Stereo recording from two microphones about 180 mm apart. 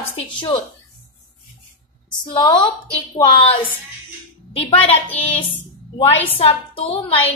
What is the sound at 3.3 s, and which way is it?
A woman's voice, 30° left (ahead or behind).